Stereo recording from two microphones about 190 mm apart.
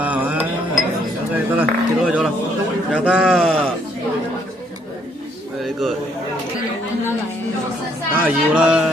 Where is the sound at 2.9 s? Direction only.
5° right (ahead or behind).